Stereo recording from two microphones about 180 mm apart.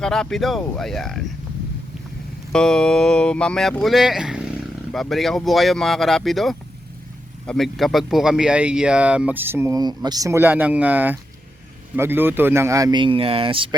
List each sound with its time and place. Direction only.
0.0 s speech: 5° left (ahead or behind)
2.5 s speech: 5° left (ahead or behind); by 13.7 s 30° right (ahead or behind)